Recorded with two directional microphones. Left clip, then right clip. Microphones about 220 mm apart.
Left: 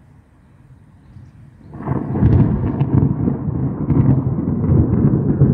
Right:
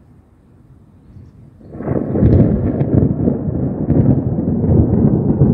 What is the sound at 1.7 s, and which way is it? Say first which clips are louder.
Thunder: right 5 dB; 20° left (ahead or behind).